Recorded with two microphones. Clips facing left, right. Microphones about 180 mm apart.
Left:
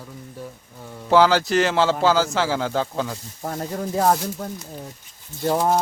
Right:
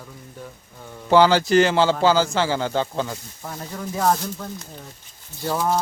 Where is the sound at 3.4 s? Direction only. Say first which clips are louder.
Left 5 dB; 45° left (ahead or behind).